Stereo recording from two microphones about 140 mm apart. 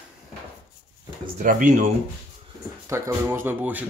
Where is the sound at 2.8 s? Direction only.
20° right (ahead or behind).